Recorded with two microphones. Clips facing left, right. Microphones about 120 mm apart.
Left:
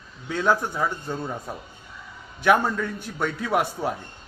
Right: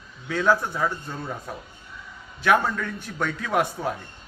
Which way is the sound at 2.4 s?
15° left (ahead or behind).